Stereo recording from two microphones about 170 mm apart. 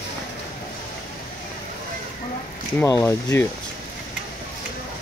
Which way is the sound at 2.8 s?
15° left (ahead or behind).